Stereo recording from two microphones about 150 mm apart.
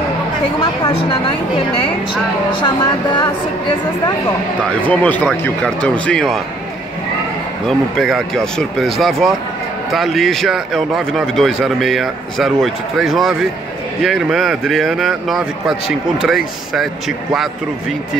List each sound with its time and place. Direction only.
2.5 s speech: 30° left (ahead or behind)
4.8 s speech: 10° left (ahead or behind)
7.6 s a man's voice: centre (ahead or behind)